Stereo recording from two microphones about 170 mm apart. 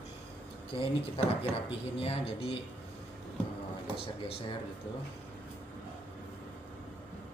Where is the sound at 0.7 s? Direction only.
35° left (ahead or behind).